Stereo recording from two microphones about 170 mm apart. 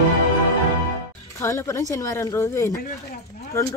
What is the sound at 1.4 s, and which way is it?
Speech, 15° left (ahead or behind).